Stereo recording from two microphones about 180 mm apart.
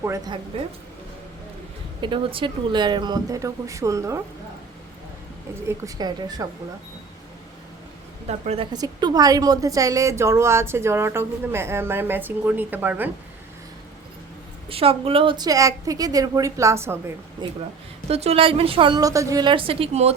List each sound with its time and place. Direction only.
0.0 s a woman's voice: 15° right (ahead or behind)
2.0 s a woman's voice: 30° right (ahead or behind)
5.6 s a woman's voice: 20° right (ahead or behind)
8.3 s a woman's voice: 35° right (ahead or behind)
8.7 s a woman's voice: 25° right (ahead or behind)
14.7 s a woman's voice: 30° right (ahead or behind); by 17.0 s 15° right (ahead or behind)
17.4 s a woman's voice: 25° right (ahead or behind)
18.1 s a woman's voice: 35° right (ahead or behind)